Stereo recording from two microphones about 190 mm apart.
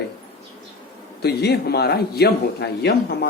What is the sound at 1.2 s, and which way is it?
Speech, 55° left (ahead or behind).